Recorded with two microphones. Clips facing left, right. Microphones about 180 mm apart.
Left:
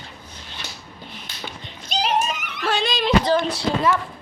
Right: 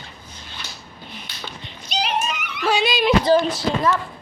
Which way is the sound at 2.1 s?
40° left (ahead or behind).